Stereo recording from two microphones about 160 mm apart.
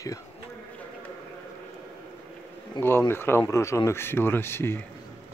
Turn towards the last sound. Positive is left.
turn(degrees=15)  # may be behind; listen again after turning